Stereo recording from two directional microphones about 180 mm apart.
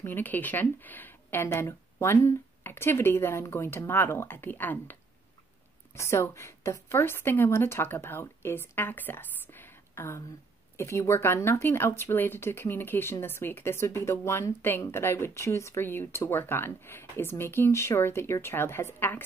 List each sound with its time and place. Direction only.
0.0 s a woman's voice: 10° left (ahead or behind)
5.9 s a woman's voice: 15° left (ahead or behind)